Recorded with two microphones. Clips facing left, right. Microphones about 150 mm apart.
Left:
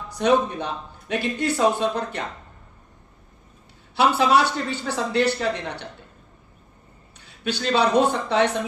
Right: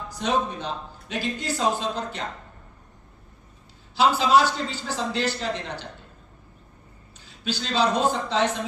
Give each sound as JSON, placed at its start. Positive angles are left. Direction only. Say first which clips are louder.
{"t": 0.1, "sound": "a man's voice", "louder": "left 6 dB", "side_deg": 60}
{"t": 3.9, "sound": "a man's voice", "louder": "left 1 dB", "side_deg": 60}
{"t": 7.4, "sound": "a man's voice", "louder": "left 3 dB", "side_deg": 60}